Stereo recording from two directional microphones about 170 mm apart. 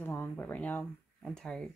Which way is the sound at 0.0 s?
10° left (ahead or behind).